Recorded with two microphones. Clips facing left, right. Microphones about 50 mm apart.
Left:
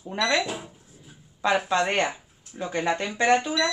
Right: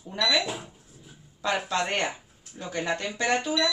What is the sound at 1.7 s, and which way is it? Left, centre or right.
Speech, left.